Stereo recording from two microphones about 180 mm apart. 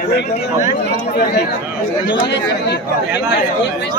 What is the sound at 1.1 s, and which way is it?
Speech, 60° left (ahead or behind).